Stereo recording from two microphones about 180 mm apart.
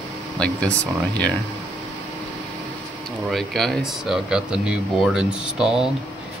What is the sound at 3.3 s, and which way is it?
Speech, centre (ahead or behind).